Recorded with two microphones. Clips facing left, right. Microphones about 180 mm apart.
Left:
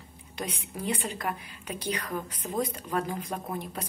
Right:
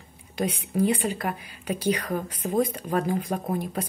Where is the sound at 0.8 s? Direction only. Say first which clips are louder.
Right 5 dB; 10° right (ahead or behind).